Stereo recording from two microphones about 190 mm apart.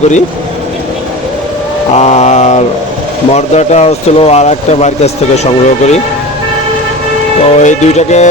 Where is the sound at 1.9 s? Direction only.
35° left (ahead or behind).